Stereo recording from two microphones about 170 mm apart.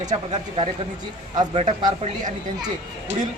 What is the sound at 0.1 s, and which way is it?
Speech, 30° right (ahead or behind).